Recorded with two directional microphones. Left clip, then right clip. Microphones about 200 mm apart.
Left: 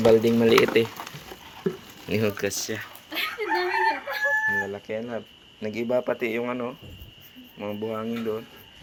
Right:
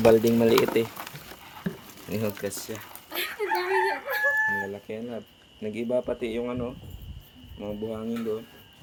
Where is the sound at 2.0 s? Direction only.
5° left (ahead or behind).